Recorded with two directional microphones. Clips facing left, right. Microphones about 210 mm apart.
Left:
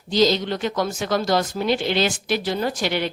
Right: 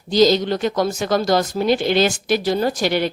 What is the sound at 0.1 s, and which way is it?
Speech, 40° right (ahead or behind).